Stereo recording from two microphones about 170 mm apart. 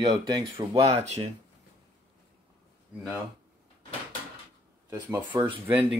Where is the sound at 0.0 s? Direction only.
30° right (ahead or behind).